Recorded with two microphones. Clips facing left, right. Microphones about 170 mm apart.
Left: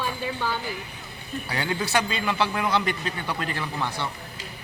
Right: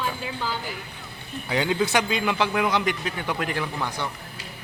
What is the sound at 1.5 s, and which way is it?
Speech, 15° right (ahead or behind).